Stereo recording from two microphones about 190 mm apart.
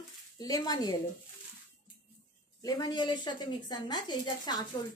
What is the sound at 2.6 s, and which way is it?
Speech, 20° left (ahead or behind).